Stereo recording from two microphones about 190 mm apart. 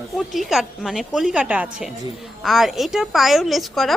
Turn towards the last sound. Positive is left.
turn(degrees=0)  # may be behind; listen again after turning